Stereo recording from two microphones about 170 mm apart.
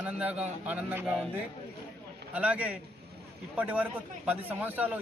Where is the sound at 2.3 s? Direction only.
5° right (ahead or behind).